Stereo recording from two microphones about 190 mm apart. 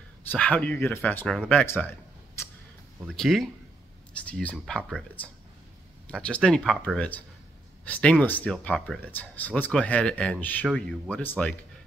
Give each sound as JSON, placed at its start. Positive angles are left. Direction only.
{"t": 0.3, "sound": "speech", "side_deg": 5}
{"t": 3.0, "sound": "speech", "side_deg": 0}